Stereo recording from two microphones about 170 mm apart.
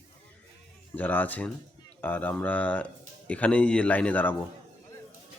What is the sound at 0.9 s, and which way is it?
Speech, 10° left (ahead or behind).